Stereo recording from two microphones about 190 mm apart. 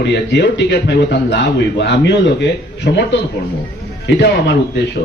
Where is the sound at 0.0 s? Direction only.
65° left (ahead or behind).